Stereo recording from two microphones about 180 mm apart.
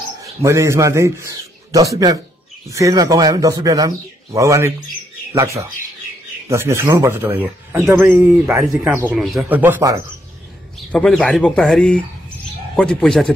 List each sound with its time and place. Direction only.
0.2 s a man's voice: 15° right (ahead or behind)
10.9 s speech: 5° left (ahead or behind)